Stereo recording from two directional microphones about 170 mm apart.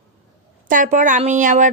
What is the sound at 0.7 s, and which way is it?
Speech, 50° right (ahead or behind).